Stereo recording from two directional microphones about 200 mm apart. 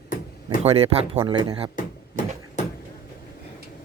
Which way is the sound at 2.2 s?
40° left (ahead or behind).